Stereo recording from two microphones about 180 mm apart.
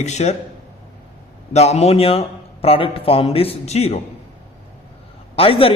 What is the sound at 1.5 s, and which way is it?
A man's voice, 35° left (ahead or behind).